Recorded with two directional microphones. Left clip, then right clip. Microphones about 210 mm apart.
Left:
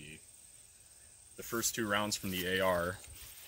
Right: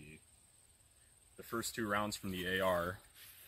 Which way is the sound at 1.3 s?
10° left (ahead or behind).